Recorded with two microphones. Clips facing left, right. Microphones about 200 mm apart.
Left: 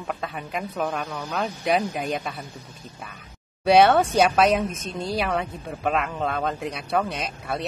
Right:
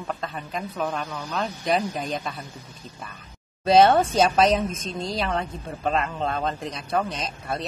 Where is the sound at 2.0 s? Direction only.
10° left (ahead or behind).